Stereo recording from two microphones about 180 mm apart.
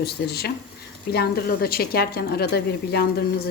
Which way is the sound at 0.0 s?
60° left (ahead or behind).